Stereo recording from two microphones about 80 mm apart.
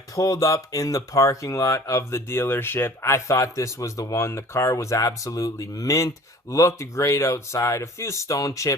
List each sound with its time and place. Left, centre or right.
0.2 s speech: left